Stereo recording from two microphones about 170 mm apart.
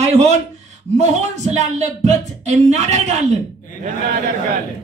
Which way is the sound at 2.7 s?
40° right (ahead or behind).